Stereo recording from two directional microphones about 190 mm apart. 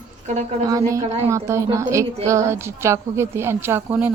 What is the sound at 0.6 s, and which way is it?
A woman's voice, 15° right (ahead or behind).